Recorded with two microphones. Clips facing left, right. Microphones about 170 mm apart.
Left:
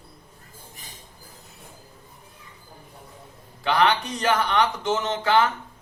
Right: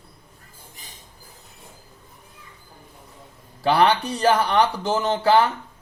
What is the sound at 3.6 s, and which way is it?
Speech, 35° right (ahead or behind).